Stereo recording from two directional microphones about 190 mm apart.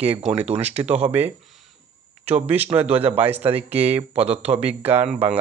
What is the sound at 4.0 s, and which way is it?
Speech, 30° right (ahead or behind).